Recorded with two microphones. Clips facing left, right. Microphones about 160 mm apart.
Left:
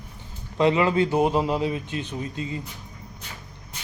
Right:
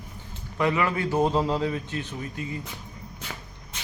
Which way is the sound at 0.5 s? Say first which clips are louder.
Left 5 dB; 25° left (ahead or behind).